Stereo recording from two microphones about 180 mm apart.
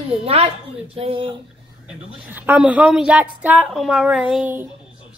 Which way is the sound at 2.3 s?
10° right (ahead or behind).